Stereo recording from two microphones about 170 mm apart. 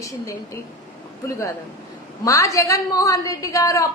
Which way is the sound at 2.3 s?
20° left (ahead or behind).